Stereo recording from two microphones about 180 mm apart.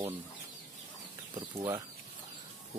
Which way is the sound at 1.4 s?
15° right (ahead or behind).